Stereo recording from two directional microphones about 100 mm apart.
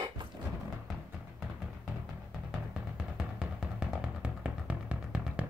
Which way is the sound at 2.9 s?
10° right (ahead or behind).